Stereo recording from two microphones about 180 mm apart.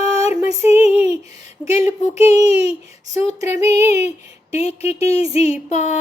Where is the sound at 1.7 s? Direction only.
15° right (ahead or behind).